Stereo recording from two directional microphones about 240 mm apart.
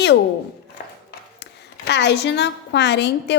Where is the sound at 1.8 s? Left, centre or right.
Left.